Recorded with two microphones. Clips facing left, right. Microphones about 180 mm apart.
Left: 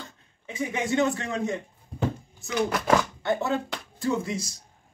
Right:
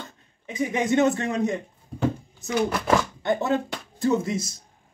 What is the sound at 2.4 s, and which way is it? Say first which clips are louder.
Speech: right 2 dB; 20° right (ahead or behind).